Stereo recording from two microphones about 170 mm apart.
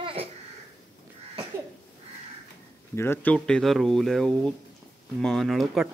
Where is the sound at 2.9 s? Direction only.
15° left (ahead or behind).